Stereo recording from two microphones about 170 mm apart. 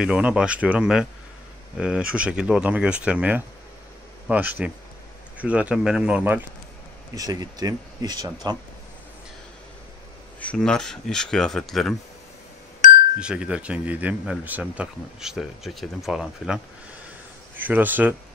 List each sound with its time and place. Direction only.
0.0 s speech: 5° right (ahead or behind)
7.2 s speech: 20° right (ahead or behind)
10.4 s speech: 5° left (ahead or behind)
13.2 s speech: 5° right (ahead or behind)
17.6 s speech: 10° right (ahead or behind)